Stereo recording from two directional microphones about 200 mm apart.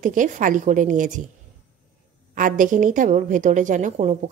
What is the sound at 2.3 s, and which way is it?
A woman's voice, 40° right (ahead or behind).